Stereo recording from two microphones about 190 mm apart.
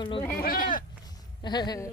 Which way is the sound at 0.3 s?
50° left (ahead or behind).